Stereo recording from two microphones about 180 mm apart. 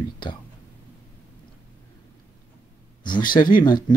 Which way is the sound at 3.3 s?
25° left (ahead or behind).